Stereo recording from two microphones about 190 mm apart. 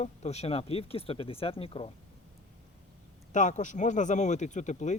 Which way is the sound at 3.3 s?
40° left (ahead or behind).